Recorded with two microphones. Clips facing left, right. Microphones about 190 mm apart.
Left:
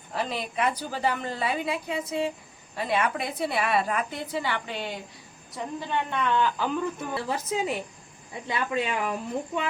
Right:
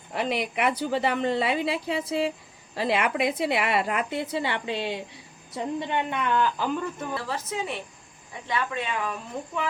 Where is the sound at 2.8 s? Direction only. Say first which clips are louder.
Right 2 dB; 90° right.